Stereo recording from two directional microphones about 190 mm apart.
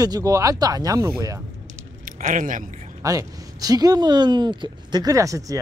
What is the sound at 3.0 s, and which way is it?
Speech, 15° right (ahead or behind).